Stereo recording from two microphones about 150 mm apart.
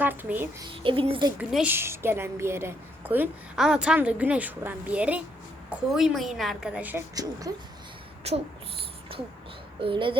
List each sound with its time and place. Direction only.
0.0 s a woman's voice: 10° right (ahead or behind)
0.7 s a child's voice: 35° right (ahead or behind)
1.4 s a woman's voice: 5° right (ahead or behind)
1.7 s a woman's voice: 15° right (ahead or behind)
7.2 s speech: 25° right (ahead or behind)
8.3 s a sound: 45° right (ahead or behind)
9.8 s a child's voice: 35° right (ahead or behind)